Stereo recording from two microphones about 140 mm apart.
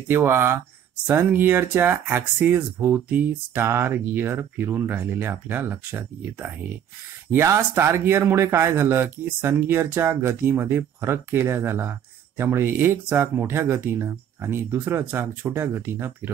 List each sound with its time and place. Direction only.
0.1 s speech: 15° right (ahead or behind)